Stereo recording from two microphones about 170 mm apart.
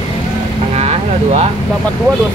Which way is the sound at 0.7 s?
35° right (ahead or behind).